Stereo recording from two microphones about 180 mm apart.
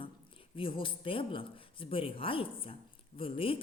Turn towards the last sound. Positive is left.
turn(degrees=30)  # may be behind; listen again after turning